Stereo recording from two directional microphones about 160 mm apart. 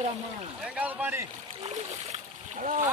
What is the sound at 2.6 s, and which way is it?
Speech, 50° right (ahead or behind).